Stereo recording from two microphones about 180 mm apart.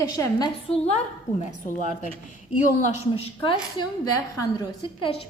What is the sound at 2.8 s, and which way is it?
Speech, 30° left (ahead or behind).